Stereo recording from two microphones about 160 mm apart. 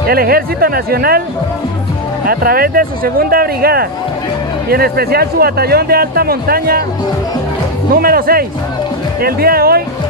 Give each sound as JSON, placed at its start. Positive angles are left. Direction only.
{"t": 0.1, "sound": "speech", "side_deg": -70}
{"t": 2.2, "sound": "speech", "side_deg": -70}
{"t": 7.9, "sound": "speech", "side_deg": -70}